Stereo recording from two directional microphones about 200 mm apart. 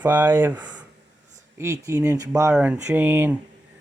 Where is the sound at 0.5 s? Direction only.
20° right (ahead or behind).